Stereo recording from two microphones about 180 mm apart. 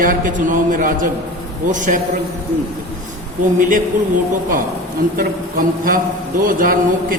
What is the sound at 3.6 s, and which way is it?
Speech, 45° right (ahead or behind).